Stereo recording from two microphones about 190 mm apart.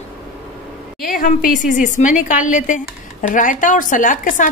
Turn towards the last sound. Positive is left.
turn(degrees=45)  # may be behind; listen again after turning